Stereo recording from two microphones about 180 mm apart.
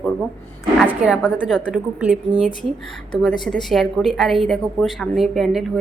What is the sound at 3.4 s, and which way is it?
A woman's voice, centre (ahead or behind).